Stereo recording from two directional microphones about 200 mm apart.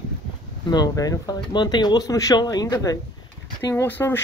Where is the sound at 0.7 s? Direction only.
20° left (ahead or behind).